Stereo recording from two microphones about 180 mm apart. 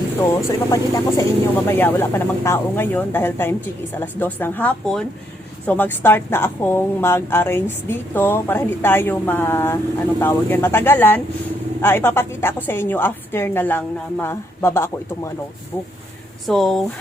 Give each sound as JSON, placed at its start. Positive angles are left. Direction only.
{"t": 0.2, "sound": "a woman's voice", "side_deg": 20}
{"t": 16.5, "sound": "speech", "side_deg": 0}